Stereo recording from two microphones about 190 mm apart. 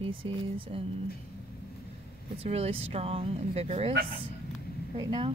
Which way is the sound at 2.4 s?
35° right (ahead or behind).